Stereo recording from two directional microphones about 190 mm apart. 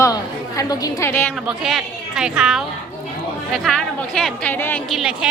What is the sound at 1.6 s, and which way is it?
A woman's voice, centre (ahead or behind).